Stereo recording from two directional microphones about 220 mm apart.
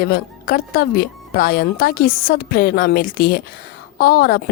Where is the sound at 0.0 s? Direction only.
45° left (ahead or behind).